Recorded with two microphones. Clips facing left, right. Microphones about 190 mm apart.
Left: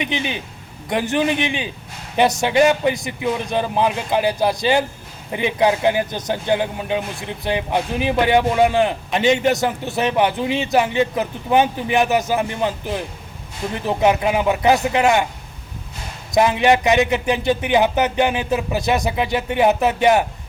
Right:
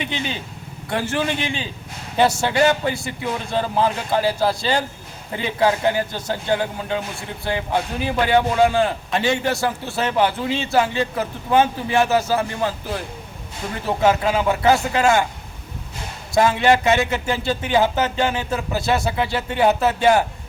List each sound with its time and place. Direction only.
0.0 s a man's voice: 15° left (ahead or behind)
16.3 s speech: 20° left (ahead or behind)